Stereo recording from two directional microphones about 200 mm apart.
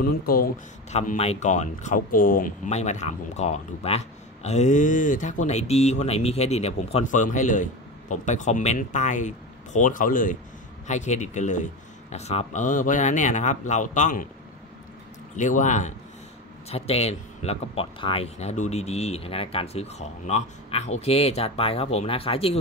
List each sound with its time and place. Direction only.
0.0 s speech: 45° left (ahead or behind)
0.9 s speech: 35° left (ahead or behind)
15.3 s speech: 40° left (ahead or behind)